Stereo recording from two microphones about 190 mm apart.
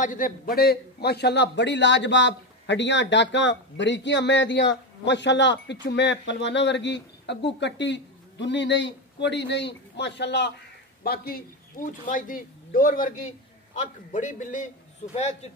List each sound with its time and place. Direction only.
0.0 s a man's voice: 45° left (ahead or behind); by 10.5 s 65° left (ahead or behind)
11.1 s a man's voice: 50° left (ahead or behind); by 15.5 s 35° left (ahead or behind)